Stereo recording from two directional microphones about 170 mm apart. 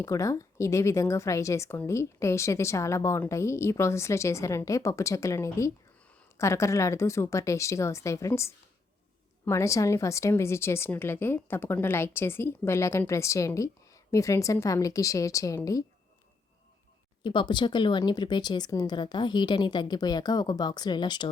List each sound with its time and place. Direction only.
0.0 s speech: 20° left (ahead or behind)
17.2 s a woman's voice: 25° left (ahead or behind)